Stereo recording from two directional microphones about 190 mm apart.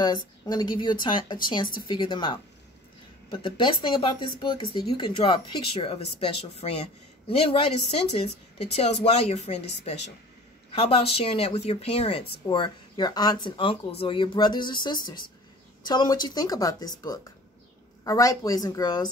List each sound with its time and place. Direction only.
0.0 s speech: 20° left (ahead or behind)